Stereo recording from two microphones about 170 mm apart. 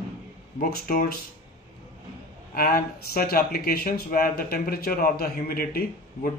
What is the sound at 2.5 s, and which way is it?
Speech, 60° left (ahead or behind).